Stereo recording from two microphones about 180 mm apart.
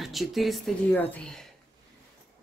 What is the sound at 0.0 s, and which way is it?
Speech, centre (ahead or behind).